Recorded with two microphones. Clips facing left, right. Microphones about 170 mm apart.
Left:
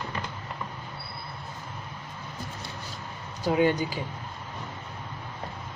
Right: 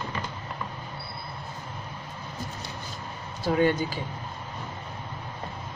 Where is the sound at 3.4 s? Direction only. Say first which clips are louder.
Even; 15° left (ahead or behind).